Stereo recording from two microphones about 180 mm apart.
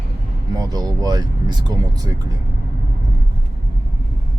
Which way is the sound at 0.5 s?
20° right (ahead or behind).